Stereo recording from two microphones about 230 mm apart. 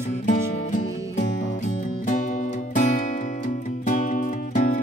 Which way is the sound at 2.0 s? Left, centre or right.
Left.